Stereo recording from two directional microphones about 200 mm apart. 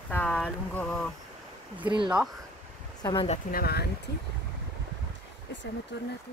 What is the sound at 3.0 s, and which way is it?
Speech, 25° left (ahead or behind).